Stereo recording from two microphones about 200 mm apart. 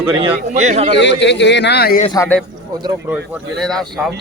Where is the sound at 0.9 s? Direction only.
60° left (ahead or behind).